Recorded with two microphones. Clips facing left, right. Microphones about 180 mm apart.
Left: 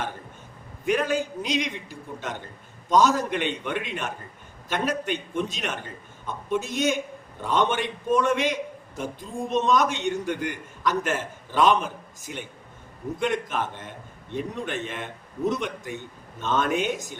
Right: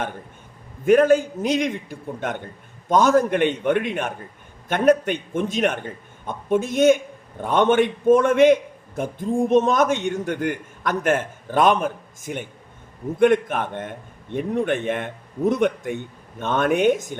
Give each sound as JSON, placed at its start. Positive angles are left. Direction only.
{"t": 0.9, "sound": "a man's voice", "side_deg": -50}